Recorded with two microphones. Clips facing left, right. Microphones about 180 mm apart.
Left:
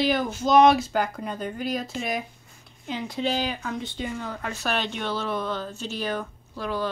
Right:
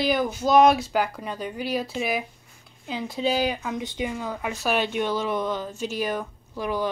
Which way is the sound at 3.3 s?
10° right (ahead or behind).